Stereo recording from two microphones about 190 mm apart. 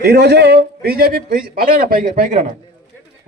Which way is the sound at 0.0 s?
60° right (ahead or behind).